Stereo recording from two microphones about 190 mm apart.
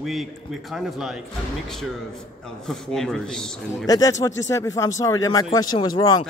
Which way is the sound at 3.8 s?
20° left (ahead or behind).